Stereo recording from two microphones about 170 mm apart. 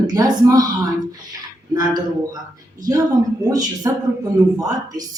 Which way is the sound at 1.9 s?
20° right (ahead or behind).